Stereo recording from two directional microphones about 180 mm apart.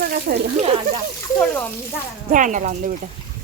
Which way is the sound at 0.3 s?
65° right (ahead or behind).